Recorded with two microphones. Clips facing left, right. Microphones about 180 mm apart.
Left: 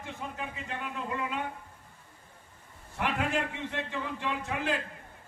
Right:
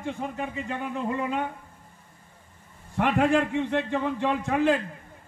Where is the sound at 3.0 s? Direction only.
50° right (ahead or behind).